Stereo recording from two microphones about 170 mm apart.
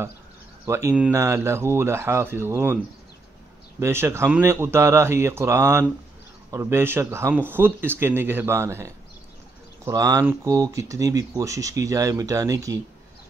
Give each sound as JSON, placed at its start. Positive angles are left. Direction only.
{"t": 0.7, "sound": "speech", "side_deg": -15}
{"t": 3.8, "sound": "speech", "side_deg": -15}